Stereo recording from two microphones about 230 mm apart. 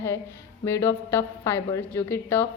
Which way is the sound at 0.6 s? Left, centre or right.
Centre.